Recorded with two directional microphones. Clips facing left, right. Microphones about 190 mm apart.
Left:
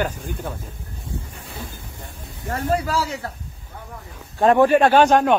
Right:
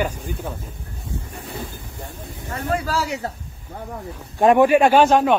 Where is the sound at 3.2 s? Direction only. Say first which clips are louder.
Right 3 dB; 25° right (ahead or behind).